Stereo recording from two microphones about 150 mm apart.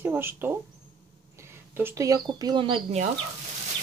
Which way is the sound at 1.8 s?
20° right (ahead or behind).